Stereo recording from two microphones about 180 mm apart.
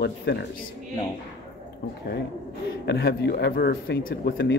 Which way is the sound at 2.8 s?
70° left (ahead or behind).